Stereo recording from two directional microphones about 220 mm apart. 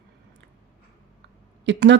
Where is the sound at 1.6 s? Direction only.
55° right (ahead or behind).